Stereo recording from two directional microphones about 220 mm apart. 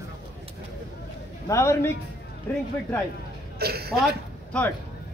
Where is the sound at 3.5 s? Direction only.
45° right (ahead or behind).